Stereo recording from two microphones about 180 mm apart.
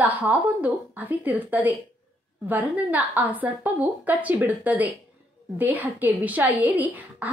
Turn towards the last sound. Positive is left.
turn(degrees=-10)  # may be behind; listen again after turning